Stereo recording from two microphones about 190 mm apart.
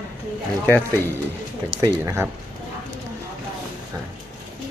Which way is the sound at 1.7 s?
20° right (ahead or behind).